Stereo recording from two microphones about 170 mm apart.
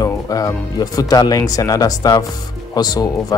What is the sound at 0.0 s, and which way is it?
Speech, 20° left (ahead or behind).